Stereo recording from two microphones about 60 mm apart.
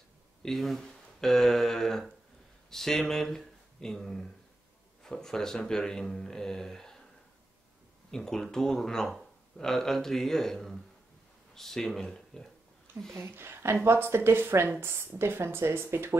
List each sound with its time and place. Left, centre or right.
0.4 s speech: centre
8.1 s speech: centre
13.1 s a woman's voice: right